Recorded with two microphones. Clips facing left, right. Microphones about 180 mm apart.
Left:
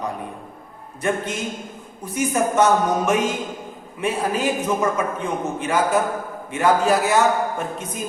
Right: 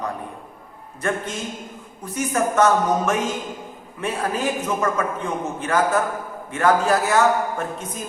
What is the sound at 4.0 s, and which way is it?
A man's voice, 15° left (ahead or behind).